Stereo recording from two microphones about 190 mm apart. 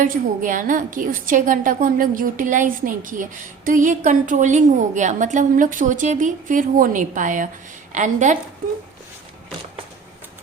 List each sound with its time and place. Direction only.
0.0 s a woman's voice: 45° right (ahead or behind)